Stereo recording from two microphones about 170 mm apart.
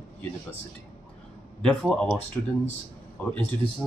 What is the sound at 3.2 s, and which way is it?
Speech, 10° left (ahead or behind).